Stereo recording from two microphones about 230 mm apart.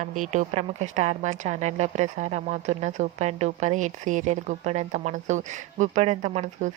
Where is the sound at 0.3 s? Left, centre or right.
Right.